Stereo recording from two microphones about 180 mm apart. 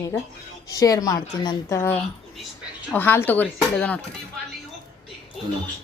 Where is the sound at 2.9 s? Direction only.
10° left (ahead or behind).